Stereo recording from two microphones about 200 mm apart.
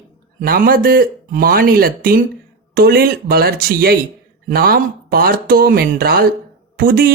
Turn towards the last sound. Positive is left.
turn(degrees=-45)  # may be behind; listen again after turning